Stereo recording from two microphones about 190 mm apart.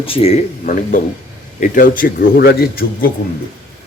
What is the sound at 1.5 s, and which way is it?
A man's voice, 45° left (ahead or behind).